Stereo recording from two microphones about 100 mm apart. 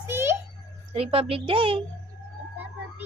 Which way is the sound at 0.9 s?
75° right (ahead or behind).